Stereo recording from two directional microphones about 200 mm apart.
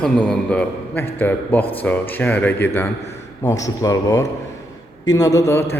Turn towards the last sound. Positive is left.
turn(degrees=15)  # may be behind; listen again after turning